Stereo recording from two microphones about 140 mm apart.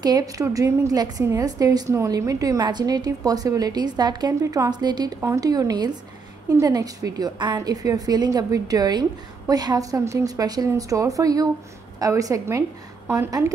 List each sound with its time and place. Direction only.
0.0 s a woman's voice: 25° right (ahead or behind)